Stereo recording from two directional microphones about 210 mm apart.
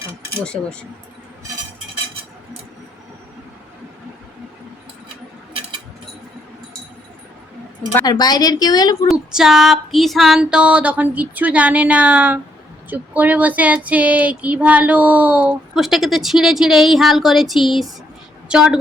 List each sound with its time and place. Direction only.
0.4 s female singing: 5° left (ahead or behind)
7.9 s a woman's voice: 20° left (ahead or behind)
9.0 s female singing: 5° right (ahead or behind)
18.4 s a woman's voice: 5° right (ahead or behind)